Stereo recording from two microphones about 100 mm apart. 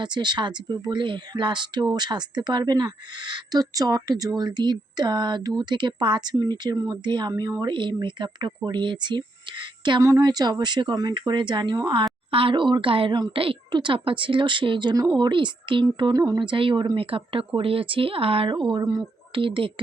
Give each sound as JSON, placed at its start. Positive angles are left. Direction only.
{"t": 0.0, "sound": "speech", "side_deg": -50}
{"t": 12.3, "sound": "speech", "side_deg": -65}
{"t": 16.1, "sound": "speech", "side_deg": -35}
{"t": 16.4, "sound": "speech", "side_deg": -55}
{"t": 18.8, "sound": "speech", "side_deg": -35}
{"t": 19.3, "sound": "speech", "side_deg": -60}